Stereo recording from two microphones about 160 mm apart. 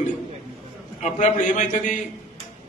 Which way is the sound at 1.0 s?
50° left (ahead or behind).